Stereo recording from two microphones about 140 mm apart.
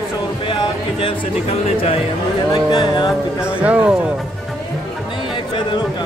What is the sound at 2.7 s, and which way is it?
Music, 35° left (ahead or behind).